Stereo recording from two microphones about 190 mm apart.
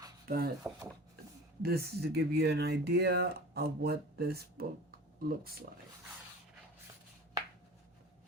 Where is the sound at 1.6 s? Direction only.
55° right (ahead or behind).